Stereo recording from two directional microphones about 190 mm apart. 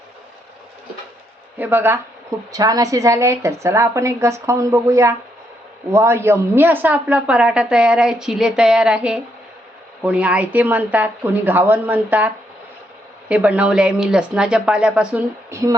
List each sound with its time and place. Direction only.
1.5 s a woman's voice: 10° right (ahead or behind)